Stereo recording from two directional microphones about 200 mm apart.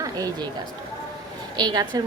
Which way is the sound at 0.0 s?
20° right (ahead or behind).